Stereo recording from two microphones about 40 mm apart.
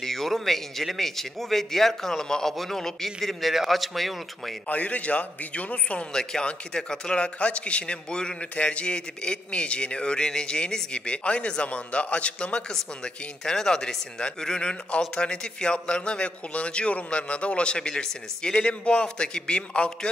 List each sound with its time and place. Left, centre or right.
0.0 s a man's voice: centre
4.6 s a man's voice: left
6.1 s speech: centre